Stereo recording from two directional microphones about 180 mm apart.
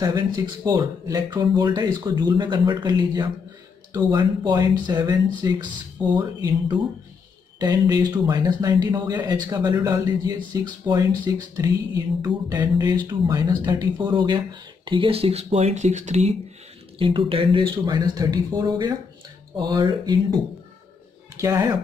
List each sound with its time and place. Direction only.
0.0 s speech: 20° right (ahead or behind); by 16.3 s 40° right (ahead or behind)
17.0 s speech: 30° right (ahead or behind)
21.4 s speech: 20° right (ahead or behind)